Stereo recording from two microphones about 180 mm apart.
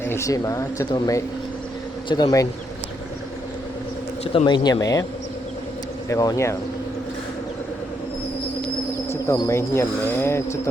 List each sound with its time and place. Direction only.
0.0 s speech: 15° left (ahead or behind)
4.2 s speech: 30° left (ahead or behind)
6.1 s speech: 20° left (ahead or behind)
8.6 s speech: 15° left (ahead or behind)